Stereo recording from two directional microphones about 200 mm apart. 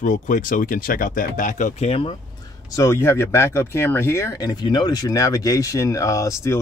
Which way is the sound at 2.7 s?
15° left (ahead or behind).